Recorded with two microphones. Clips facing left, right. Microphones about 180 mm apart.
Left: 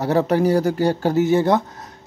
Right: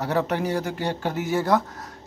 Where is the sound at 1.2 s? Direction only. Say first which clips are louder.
Left 5 dB; 25° left (ahead or behind).